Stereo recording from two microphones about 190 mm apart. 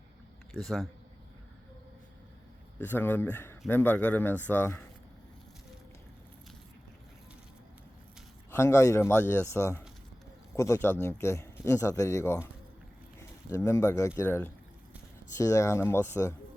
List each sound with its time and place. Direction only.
0.5 s a man's voice: centre (ahead or behind)
2.8 s a man's voice: 10° left (ahead or behind)
8.4 s a man's voice: 15° left (ahead or behind)
13.7 s a man's voice: 15° left (ahead or behind)